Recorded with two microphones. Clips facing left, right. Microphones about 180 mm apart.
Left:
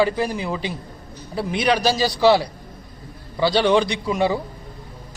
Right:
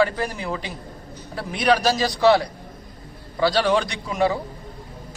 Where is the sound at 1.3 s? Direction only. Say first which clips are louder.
Even; centre (ahead or behind).